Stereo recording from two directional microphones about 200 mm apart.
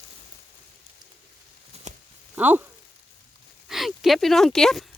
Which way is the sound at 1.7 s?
30° right (ahead or behind).